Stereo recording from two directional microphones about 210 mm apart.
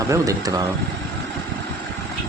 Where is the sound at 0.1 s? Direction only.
15° right (ahead or behind).